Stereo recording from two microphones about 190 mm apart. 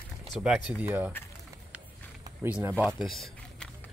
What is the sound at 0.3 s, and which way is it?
Speech, 5° right (ahead or behind).